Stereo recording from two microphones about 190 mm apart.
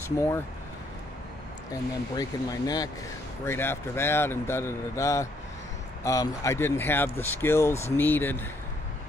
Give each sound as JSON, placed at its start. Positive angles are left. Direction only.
{"t": 1.7, "sound": "speech", "side_deg": 20}